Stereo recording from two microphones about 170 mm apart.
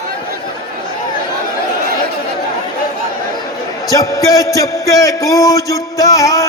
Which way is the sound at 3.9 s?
20° left (ahead or behind).